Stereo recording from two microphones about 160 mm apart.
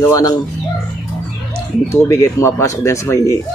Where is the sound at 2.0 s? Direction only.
15° left (ahead or behind).